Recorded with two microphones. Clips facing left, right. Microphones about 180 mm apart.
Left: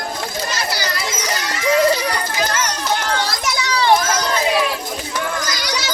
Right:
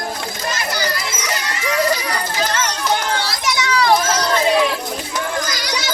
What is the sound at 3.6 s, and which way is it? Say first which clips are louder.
Children playing: right 1 dB; 35° left (ahead or behind).